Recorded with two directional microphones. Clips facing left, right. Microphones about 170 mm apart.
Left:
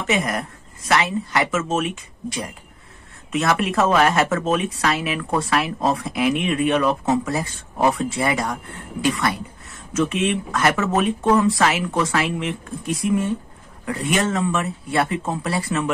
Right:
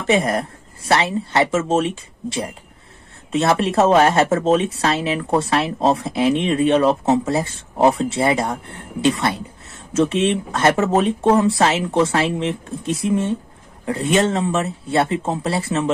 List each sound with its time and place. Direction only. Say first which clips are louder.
0.0 s speech: right 5 dB; 30° right (ahead or behind)